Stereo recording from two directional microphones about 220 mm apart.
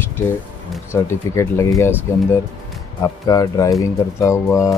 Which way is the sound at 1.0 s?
15° left (ahead or behind).